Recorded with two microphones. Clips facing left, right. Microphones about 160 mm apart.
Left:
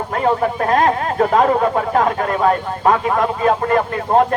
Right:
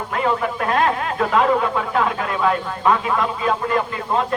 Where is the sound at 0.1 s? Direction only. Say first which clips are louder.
Left 4 dB; 40° left (ahead or behind).